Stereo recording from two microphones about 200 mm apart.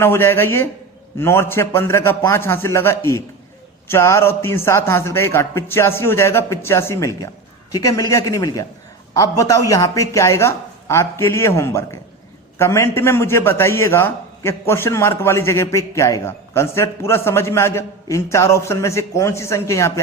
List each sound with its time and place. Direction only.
0.0 s a man's voice: 10° left (ahead or behind)